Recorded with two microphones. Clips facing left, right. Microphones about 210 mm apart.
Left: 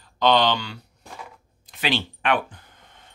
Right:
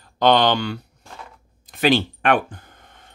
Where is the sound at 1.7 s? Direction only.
50° right (ahead or behind).